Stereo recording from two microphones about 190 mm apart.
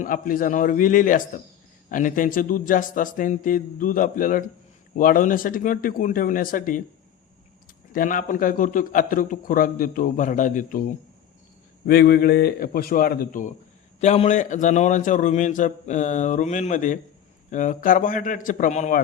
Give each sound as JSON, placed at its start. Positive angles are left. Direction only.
{"t": 0.0, "sound": "a man's voice", "side_deg": 45}
{"t": 7.9, "sound": "a man's voice", "side_deg": 45}
{"t": 14.0, "sound": "a man's voice", "side_deg": 35}